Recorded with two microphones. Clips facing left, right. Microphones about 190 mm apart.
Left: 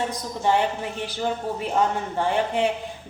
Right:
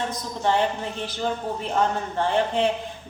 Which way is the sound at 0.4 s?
15° left (ahead or behind).